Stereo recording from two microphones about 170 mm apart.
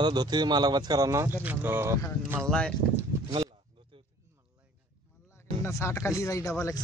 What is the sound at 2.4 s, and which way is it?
Speech, 5° left (ahead or behind).